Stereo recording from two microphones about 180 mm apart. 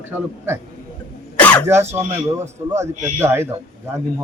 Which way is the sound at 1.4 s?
5° left (ahead or behind).